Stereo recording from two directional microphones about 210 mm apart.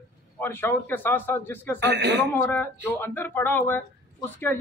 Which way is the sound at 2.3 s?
10° left (ahead or behind).